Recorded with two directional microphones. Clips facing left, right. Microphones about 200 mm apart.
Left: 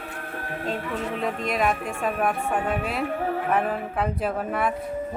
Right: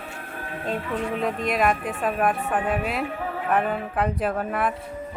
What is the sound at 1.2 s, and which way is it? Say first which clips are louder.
Music: right 1 dB; centre (ahead or behind).